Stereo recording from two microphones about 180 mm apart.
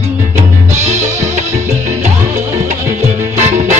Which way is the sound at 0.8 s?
40° right (ahead or behind).